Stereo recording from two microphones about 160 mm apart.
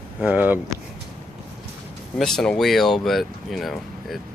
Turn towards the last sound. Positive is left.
turn(degrees=0)  # may be behind; listen again after turning